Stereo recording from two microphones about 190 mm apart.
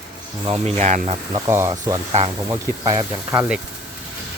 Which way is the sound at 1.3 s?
15° right (ahead or behind).